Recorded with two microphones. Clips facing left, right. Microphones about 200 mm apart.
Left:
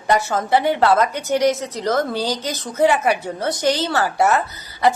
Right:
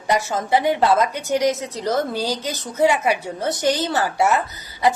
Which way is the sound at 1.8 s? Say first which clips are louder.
Left 1 dB; 10° right (ahead or behind).